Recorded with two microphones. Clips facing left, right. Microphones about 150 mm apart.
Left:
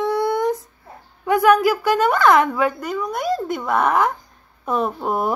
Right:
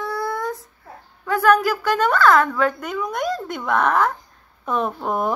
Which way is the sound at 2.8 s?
Centre (ahead or behind).